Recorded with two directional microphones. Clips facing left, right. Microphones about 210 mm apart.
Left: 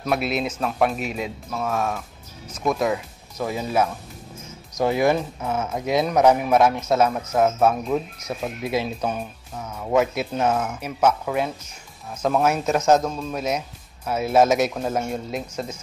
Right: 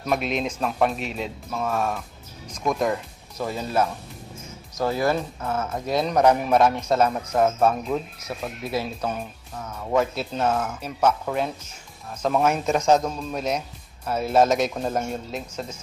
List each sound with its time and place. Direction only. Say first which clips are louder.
0.0 s speech: left 1 dB; 5° left (ahead or behind)
4.7 s speech: left 3 dB; 15° left (ahead or behind)